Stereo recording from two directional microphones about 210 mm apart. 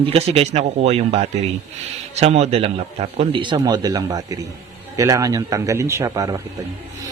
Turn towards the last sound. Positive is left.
turn(degrees=-15)  # may be behind; listen again after turning